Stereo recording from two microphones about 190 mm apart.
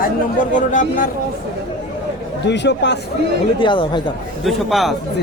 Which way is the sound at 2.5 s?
65° left (ahead or behind).